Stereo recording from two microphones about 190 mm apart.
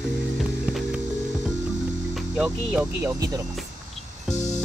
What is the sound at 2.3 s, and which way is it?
Speech, 5° right (ahead or behind).